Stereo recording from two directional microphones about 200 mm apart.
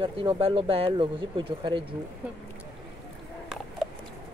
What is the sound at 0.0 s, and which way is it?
Speech, 25° right (ahead or behind).